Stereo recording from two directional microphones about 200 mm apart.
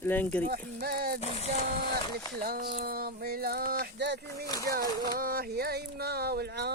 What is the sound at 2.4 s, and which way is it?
Speech, 45° right (ahead or behind).